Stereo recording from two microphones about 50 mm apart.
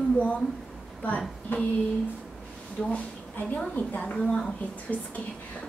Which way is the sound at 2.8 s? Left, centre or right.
Left.